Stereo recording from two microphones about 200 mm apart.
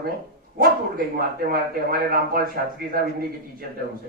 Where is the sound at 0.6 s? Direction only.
50° right (ahead or behind).